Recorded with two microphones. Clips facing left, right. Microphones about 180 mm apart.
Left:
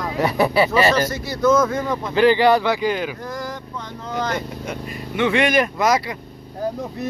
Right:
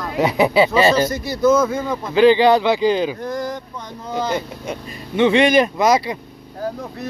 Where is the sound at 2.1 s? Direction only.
20° right (ahead or behind).